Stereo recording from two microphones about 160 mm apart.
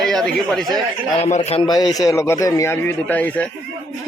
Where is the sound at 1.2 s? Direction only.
45° left (ahead or behind).